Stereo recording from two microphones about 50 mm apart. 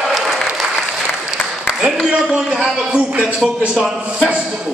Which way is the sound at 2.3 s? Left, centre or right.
Right.